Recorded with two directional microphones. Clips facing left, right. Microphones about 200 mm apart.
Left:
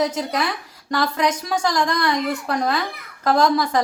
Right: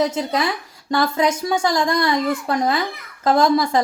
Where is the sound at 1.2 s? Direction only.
25° right (ahead or behind).